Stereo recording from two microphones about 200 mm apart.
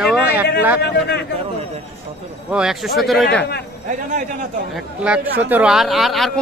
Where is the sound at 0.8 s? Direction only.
55° left (ahead or behind).